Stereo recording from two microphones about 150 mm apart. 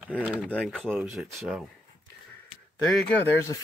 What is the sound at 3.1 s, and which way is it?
Speech, 15° left (ahead or behind).